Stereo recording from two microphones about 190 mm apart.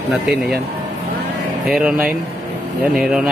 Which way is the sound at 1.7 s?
5° right (ahead or behind).